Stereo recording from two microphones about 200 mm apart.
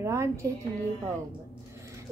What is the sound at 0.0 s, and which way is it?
Speech, 15° right (ahead or behind).